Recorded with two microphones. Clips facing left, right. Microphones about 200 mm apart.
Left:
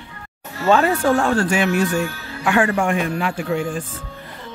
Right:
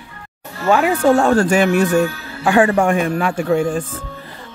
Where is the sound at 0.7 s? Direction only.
10° right (ahead or behind).